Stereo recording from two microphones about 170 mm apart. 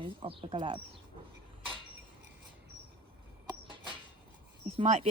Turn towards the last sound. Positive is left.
turn(degrees=-40)  # may be behind; listen again after turning